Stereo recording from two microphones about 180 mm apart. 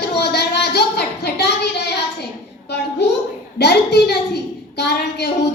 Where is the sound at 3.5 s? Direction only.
65° left (ahead or behind).